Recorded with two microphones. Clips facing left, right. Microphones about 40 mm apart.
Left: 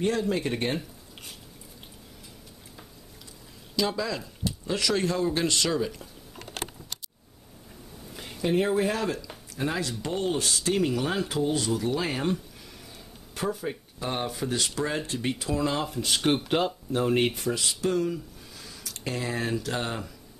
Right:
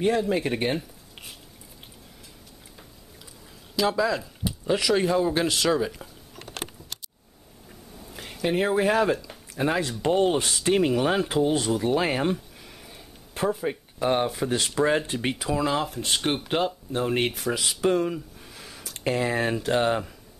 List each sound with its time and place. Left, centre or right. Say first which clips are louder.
0.0 s speech: right 3 dB; centre
3.7 s speech: right 5 dB; centre
8.5 s speech: right 1 dB; centre
8.8 s speech: right 6 dB; right
15.3 s speech: right 3 dB; centre
17.6 s speech: right 6 dB; right